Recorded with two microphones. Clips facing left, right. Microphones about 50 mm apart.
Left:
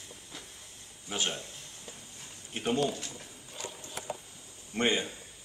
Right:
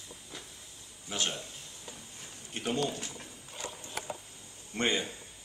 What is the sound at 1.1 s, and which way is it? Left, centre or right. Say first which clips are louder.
Speech: left 1 dB; centre.